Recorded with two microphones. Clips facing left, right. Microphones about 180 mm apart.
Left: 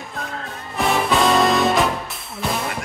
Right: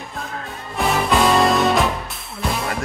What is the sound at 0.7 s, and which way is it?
Music, centre (ahead or behind).